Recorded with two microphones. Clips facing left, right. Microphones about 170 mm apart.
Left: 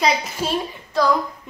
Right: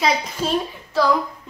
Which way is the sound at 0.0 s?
5° left (ahead or behind).